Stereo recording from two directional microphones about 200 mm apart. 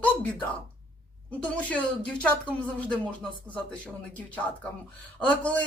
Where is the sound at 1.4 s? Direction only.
5° left (ahead or behind).